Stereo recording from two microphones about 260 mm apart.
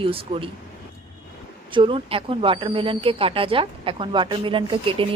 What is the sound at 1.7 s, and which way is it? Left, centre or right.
Speech, right.